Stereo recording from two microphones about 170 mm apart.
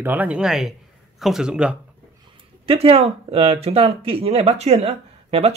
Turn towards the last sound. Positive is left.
turn(degrees=-35)  # may be behind; listen again after turning